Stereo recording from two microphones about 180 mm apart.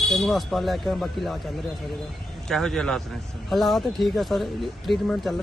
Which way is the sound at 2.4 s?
5° left (ahead or behind).